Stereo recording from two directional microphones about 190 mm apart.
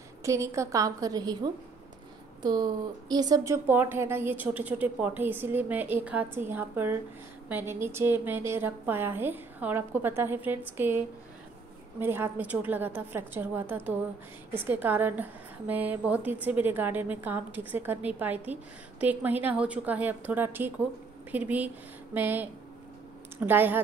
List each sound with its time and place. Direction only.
0.2 s a woman's voice: 15° right (ahead or behind)
12.0 s a woman's voice: 10° right (ahead or behind)